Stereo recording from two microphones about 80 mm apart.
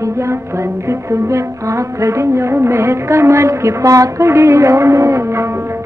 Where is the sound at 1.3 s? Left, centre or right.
Right.